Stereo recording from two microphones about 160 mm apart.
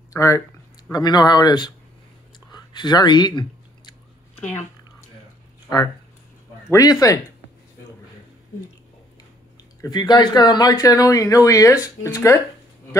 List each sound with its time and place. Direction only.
0.1 s speech: 20° left (ahead or behind)
2.5 s chewing: 25° left (ahead or behind)
6.7 s speech: 20° left (ahead or behind)
9.8 s speech: 25° left (ahead or behind)